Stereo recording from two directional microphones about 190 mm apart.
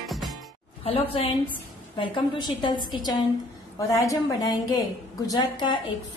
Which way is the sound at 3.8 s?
15° left (ahead or behind).